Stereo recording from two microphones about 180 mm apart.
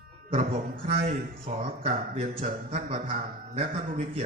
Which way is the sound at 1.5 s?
35° right (ahead or behind).